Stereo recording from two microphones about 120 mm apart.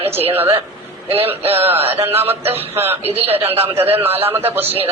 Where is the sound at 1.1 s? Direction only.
55° right (ahead or behind).